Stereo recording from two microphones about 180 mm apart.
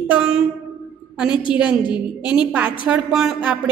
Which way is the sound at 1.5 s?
5° right (ahead or behind).